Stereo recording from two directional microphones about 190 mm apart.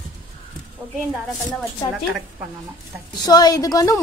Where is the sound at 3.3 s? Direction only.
20° left (ahead or behind).